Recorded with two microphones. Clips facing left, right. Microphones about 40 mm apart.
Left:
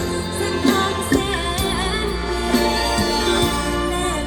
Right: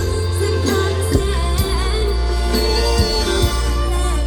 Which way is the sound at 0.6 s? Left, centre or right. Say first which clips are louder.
Left 1 dB; left.